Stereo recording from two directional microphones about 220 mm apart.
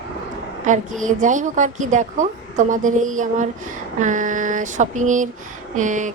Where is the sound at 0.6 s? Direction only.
35° right (ahead or behind).